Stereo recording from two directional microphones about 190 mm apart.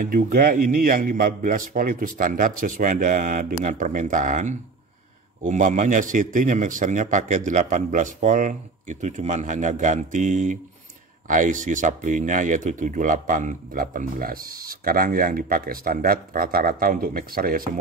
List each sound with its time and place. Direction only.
0.1 s a man's voice: 50° right (ahead or behind)